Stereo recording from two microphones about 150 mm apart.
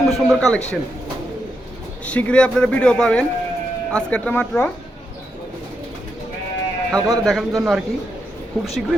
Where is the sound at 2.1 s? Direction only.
10° left (ahead or behind).